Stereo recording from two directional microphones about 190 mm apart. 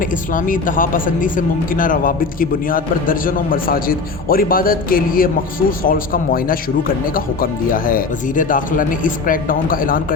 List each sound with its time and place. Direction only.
0.0 s speech: 45° left (ahead or behind)